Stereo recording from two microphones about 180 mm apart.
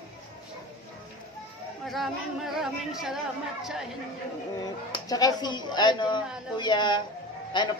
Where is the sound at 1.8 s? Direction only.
Centre (ahead or behind).